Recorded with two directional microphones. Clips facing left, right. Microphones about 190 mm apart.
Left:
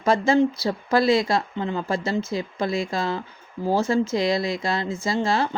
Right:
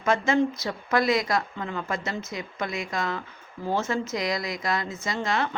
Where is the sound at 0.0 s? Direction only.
35° left (ahead or behind).